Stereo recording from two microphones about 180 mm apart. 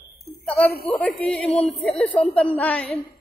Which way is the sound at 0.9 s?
10° left (ahead or behind).